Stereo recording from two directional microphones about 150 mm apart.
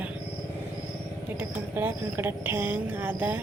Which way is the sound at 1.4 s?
15° right (ahead or behind).